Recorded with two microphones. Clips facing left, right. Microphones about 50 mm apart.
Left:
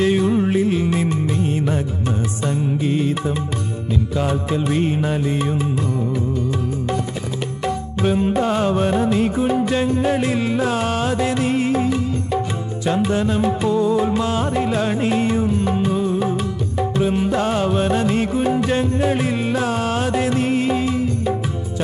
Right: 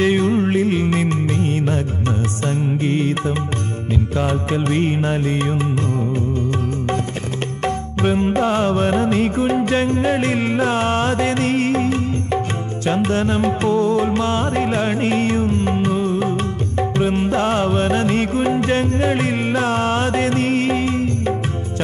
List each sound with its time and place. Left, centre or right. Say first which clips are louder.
0.0 s music: right 1 dB; right
0.6 s music: right 1 dB; right
4.6 s music: right 1 dB; right
5.2 s music: right 1 dB; right
7.6 s music: right 1 dB; right
15.2 s music: right 1 dB; right